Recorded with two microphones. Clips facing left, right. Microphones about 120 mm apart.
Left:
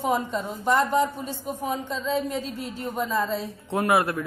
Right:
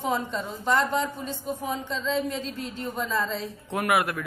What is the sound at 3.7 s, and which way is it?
Speech, 30° left (ahead or behind).